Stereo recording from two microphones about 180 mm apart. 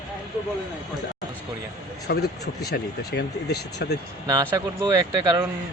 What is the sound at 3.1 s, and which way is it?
Speech, 70° left (ahead or behind).